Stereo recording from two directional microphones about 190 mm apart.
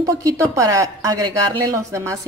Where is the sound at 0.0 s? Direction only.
15° right (ahead or behind).